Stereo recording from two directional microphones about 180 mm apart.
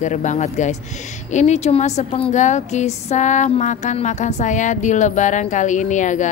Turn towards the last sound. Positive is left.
turn(degrees=45)  # may be behind; listen again after turning